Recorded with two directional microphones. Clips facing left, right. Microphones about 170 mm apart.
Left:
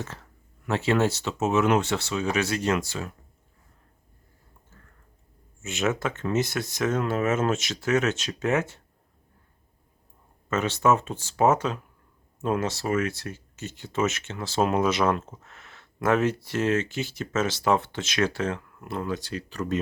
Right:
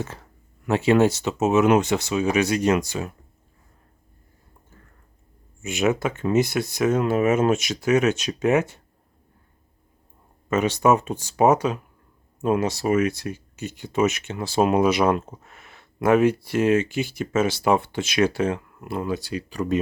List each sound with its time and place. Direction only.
0.7 s speech: 15° right (ahead or behind)
4.7 s a sound: 15° right (ahead or behind)
5.6 s speech: 15° right (ahead or behind)
10.5 s speech: 15° right (ahead or behind)